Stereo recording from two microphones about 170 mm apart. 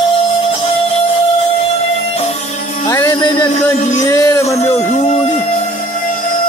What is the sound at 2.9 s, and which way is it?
Music, 20° left (ahead or behind).